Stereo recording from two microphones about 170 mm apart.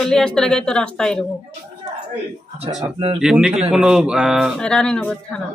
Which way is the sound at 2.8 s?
30° right (ahead or behind).